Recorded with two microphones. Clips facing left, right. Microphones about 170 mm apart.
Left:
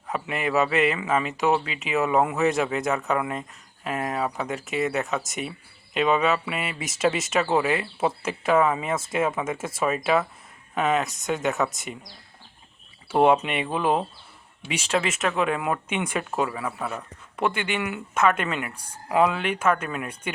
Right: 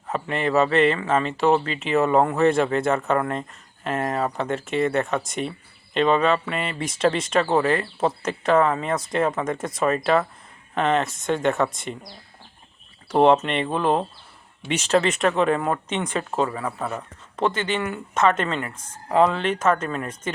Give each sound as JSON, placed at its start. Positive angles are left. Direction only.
{"t": 0.1, "sound": "speech", "side_deg": 5}
{"t": 13.1, "sound": "speech", "side_deg": 5}
{"t": 16.9, "sound": "a sound", "side_deg": -15}
{"t": 17.4, "sound": "speech", "side_deg": 15}
{"t": 18.7, "sound": "speech", "side_deg": 35}
{"t": 19.0, "sound": "speech", "side_deg": 10}